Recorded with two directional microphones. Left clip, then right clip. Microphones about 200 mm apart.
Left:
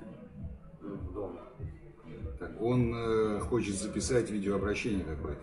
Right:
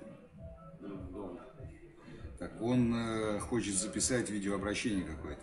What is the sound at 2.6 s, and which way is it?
Speech, 60° right (ahead or behind).